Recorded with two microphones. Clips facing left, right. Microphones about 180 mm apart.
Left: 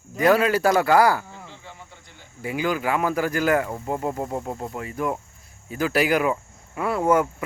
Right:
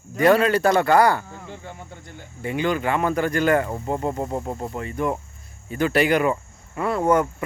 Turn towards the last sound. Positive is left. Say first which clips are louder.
# right 1 dB
turn(degrees=5)  # may be behind; listen again after turning